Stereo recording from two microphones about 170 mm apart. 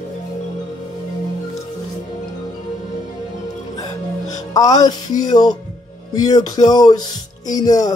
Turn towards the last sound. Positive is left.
turn(degrees=20)  # may be behind; listen again after turning